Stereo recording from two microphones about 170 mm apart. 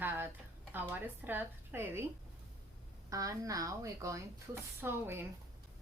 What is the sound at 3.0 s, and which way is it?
A woman's voice, 20° right (ahead or behind).